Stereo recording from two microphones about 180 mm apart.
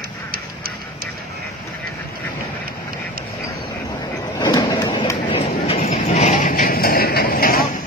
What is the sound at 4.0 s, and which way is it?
Vehicle, 25° left (ahead or behind).